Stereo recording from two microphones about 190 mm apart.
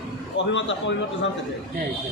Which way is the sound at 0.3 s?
75° left (ahead or behind).